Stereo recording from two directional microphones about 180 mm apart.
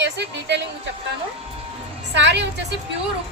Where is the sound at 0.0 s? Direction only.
75° right (ahead or behind).